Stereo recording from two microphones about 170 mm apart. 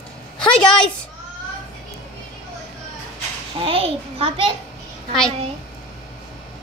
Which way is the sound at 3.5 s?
30° right (ahead or behind).